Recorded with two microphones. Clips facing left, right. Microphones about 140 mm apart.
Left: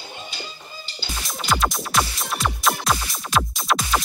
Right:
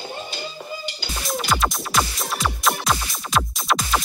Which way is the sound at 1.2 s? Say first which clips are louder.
Right 1 dB; centre (ahead or behind).